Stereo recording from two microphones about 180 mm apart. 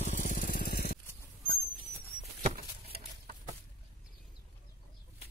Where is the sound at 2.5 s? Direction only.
50° right (ahead or behind).